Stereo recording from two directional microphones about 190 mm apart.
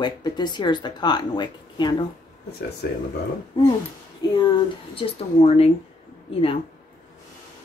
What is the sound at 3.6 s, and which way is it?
Speech, 20° left (ahead or behind).